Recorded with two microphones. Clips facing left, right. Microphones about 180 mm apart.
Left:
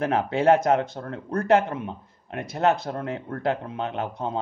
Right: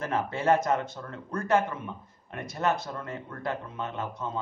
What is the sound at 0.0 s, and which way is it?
A man's voice, 65° left (ahead or behind).